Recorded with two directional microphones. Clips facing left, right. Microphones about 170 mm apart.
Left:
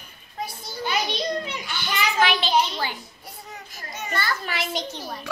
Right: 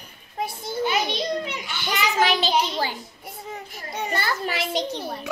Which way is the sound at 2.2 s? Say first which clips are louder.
Even; 40° right (ahead or behind).